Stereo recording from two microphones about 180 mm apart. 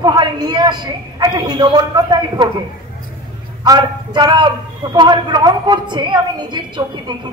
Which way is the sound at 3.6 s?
20° right (ahead or behind).